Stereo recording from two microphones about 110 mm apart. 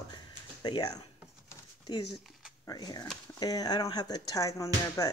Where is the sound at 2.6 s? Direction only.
35° left (ahead or behind).